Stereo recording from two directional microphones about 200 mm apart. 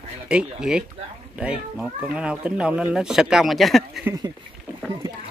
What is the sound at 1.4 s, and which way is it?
Speech, 5° right (ahead or behind).